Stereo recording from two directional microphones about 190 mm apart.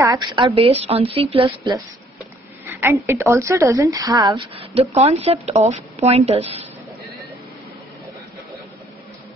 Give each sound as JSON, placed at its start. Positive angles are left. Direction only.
{"t": 0.0, "sound": "a woman's voice", "side_deg": -20}
{"t": 2.6, "sound": "a woman's voice", "side_deg": -10}